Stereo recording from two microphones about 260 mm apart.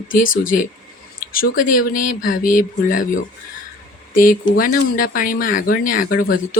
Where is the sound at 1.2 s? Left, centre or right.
Left.